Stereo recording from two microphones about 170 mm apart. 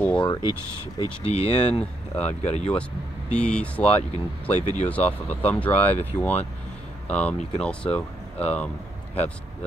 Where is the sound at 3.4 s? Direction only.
5° left (ahead or behind).